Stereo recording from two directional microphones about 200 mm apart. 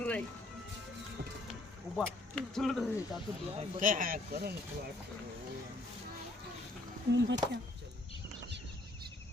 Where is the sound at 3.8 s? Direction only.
40° right (ahead or behind).